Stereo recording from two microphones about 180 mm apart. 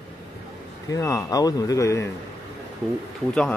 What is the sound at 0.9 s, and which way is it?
Speech, 20° left (ahead or behind).